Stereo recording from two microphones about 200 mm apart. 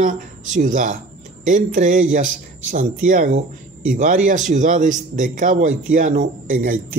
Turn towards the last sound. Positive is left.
turn(degrees=-40)  # may be behind; listen again after turning